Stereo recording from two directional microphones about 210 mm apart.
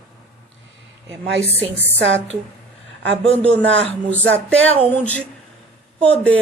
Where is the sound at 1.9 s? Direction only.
65° right (ahead or behind).